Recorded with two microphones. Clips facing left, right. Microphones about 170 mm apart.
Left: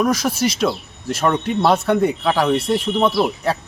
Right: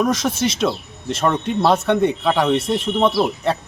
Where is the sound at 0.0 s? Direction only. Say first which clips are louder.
Left 1 dB; centre (ahead or behind).